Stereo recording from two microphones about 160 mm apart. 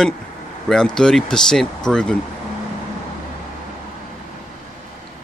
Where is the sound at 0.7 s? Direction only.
5° left (ahead or behind).